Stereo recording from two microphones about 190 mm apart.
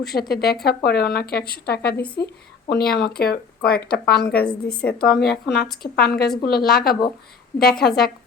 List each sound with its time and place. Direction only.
0.0 s a woman's voice: 55° left (ahead or behind)